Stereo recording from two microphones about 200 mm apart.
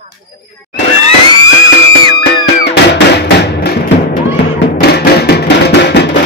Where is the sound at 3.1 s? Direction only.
55° left (ahead or behind).